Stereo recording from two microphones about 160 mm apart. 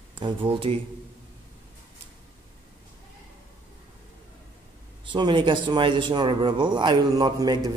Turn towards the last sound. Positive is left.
turn(degrees=-25)  # may be behind; listen again after turning